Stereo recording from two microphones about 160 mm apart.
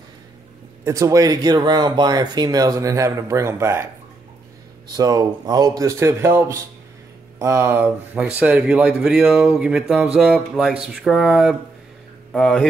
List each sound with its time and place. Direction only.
0.8 s speech: 20° right (ahead or behind)
4.9 s speech: 25° right (ahead or behind); by 12.6 s 5° left (ahead or behind)